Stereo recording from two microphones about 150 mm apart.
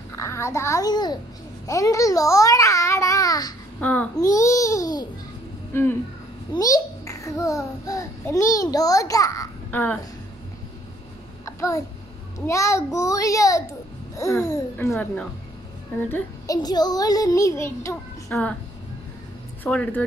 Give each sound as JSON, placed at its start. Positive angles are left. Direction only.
{"t": 0.1, "sound": "a child's voice", "side_deg": 20}
{"t": 1.7, "sound": "babbling", "side_deg": 20}
{"t": 3.8, "sound": "speech", "side_deg": 10}
{"t": 4.2, "sound": "a child's voice", "side_deg": 20}
{"t": 9.7, "sound": "speech", "side_deg": 10}
{"t": 11.4, "sound": "a sound", "side_deg": 20}
{"t": 12.4, "sound": "speech", "side_deg": 20}
{"t": 16.1, "sound": "speech", "side_deg": 25}
{"t": 19.6, "sound": "speech", "side_deg": 10}